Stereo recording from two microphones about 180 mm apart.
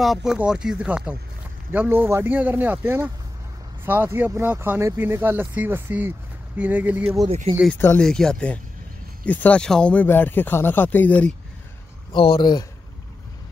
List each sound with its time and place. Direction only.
0.0 s speech: centre (ahead or behind)
7.2 s speech: 35° right (ahead or behind)
7.7 s speech: 10° left (ahead or behind)
12.1 s speech: 30° left (ahead or behind)